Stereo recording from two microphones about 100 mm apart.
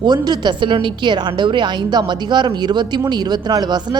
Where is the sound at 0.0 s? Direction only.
45° right (ahead or behind).